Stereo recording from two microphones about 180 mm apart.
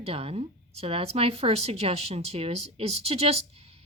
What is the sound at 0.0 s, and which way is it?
Speech, 35° right (ahead or behind).